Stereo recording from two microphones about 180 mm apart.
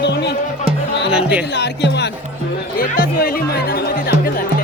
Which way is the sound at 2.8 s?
55° left (ahead or behind).